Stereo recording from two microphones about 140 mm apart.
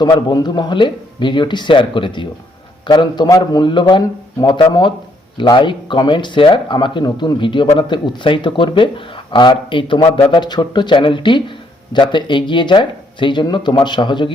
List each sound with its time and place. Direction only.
0.0 s speech: 30° left (ahead or behind)